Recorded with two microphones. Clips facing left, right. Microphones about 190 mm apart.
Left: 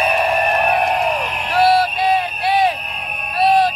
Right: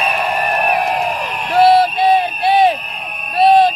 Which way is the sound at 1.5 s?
20° right (ahead or behind).